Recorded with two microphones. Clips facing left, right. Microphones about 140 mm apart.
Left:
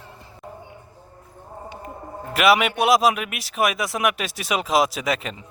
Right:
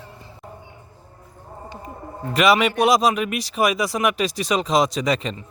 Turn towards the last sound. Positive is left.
turn(degrees=5)  # may be behind; listen again after turning